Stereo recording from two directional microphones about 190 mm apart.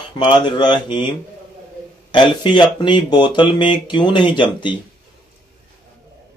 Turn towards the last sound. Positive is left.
turn(degrees=25)  # may be behind; listen again after turning